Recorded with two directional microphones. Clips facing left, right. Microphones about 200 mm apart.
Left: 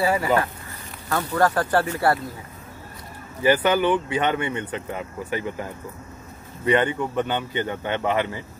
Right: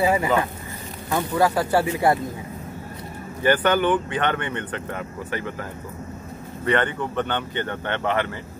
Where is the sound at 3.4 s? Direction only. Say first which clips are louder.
Even; 10° left (ahead or behind).